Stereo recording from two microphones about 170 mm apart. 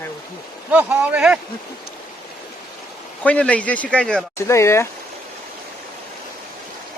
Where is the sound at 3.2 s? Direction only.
10° left (ahead or behind).